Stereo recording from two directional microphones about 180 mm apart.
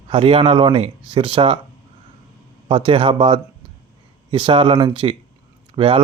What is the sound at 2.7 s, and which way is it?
Speech, 30° right (ahead or behind).